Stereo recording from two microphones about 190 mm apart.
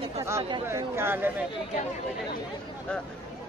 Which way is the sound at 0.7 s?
15° right (ahead or behind).